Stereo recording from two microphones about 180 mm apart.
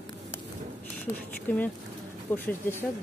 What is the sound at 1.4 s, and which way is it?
Speech, 10° left (ahead or behind).